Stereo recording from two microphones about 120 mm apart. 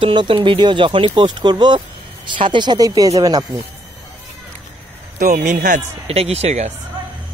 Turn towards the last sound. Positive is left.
turn(degrees=-65)  # may be behind; listen again after turning